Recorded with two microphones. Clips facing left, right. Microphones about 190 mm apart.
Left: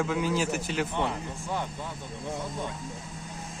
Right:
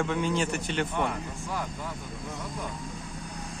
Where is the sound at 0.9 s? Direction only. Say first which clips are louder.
Even; 25° left (ahead or behind).